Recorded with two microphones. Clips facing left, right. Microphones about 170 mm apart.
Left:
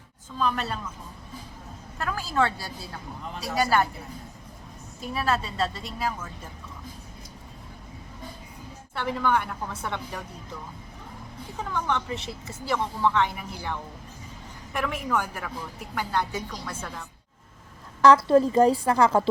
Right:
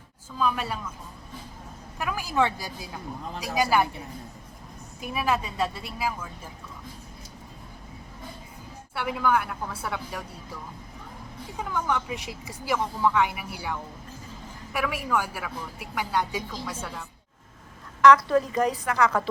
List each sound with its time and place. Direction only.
0.3 s a woman's voice: 5° right (ahead or behind)
2.0 s a woman's voice: 15° right (ahead or behind)
4.9 s a woman's voice: 10° right (ahead or behind)
9.0 s a woman's voice: 10° right (ahead or behind)
11.5 s a woman's voice: 10° right (ahead or behind)
18.0 s a woman's voice: 30° left (ahead or behind)